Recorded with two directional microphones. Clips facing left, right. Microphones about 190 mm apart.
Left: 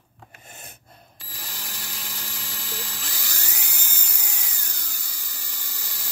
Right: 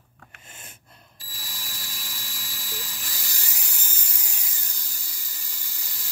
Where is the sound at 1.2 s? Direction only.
65° left (ahead or behind).